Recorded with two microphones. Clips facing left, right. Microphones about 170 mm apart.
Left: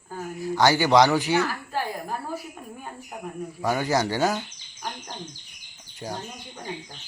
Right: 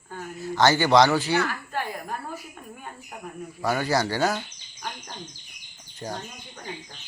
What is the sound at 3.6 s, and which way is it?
Speech, 15° left (ahead or behind).